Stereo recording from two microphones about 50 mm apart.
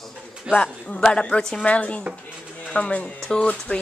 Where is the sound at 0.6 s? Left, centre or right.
Centre.